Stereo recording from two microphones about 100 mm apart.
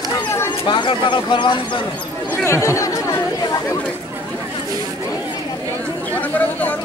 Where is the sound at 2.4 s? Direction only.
30° left (ahead or behind).